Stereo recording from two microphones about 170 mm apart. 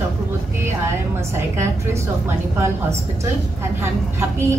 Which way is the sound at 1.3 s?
15° right (ahead or behind).